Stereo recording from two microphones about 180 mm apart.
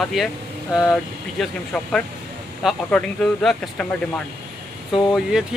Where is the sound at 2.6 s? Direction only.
Centre (ahead or behind).